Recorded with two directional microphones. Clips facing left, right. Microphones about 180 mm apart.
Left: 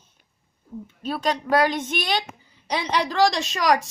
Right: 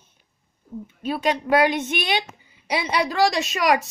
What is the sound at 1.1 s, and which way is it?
A woman's voice, 15° right (ahead or behind).